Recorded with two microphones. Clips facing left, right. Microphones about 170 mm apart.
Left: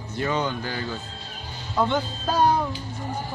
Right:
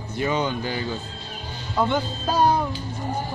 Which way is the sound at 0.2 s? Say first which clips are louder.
Right 2 dB; 15° right (ahead or behind).